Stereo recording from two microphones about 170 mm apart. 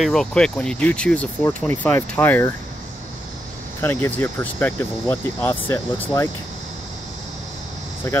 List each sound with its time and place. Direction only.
0.0 s speech: centre (ahead or behind)
3.8 s speech: 10° left (ahead or behind)
8.0 s speech: 15° left (ahead or behind)